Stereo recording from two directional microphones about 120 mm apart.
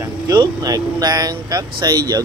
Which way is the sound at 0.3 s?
30° right (ahead or behind).